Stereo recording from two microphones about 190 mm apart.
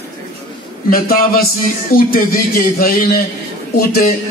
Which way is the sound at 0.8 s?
50° left (ahead or behind).